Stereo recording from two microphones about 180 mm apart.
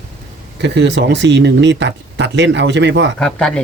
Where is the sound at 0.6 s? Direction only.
75° right (ahead or behind).